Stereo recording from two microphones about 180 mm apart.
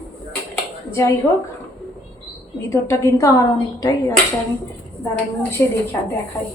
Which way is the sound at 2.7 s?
15° left (ahead or behind).